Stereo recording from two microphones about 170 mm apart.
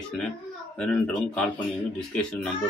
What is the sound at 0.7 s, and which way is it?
Speech, 5° left (ahead or behind).